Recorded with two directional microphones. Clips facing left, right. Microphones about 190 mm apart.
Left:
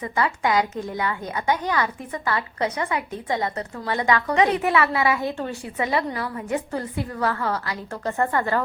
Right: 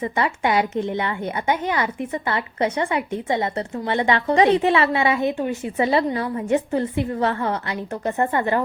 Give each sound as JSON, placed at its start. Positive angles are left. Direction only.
{"t": 0.0, "sound": "a woman's voice", "side_deg": -25}